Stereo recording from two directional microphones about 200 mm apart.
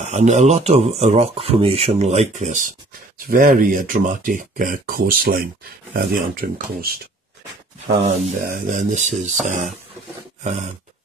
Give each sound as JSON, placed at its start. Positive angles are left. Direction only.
{"t": 0.0, "sound": "speech", "side_deg": -35}
{"t": 8.0, "sound": "speech", "side_deg": -45}